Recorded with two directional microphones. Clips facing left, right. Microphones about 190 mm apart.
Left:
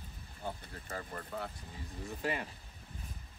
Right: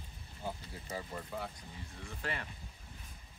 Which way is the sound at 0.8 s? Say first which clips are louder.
Right 1 dB; 10° right (ahead or behind).